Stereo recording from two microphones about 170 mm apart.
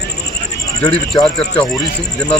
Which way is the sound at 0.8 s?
20° left (ahead or behind).